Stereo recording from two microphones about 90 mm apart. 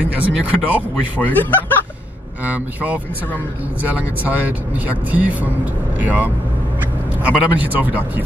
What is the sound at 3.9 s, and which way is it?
Speech, 20° right (ahead or behind).